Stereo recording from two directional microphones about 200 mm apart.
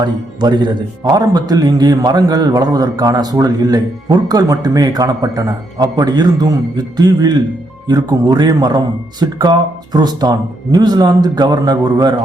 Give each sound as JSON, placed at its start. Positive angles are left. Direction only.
{"t": 0.0, "sound": "speech", "side_deg": -20}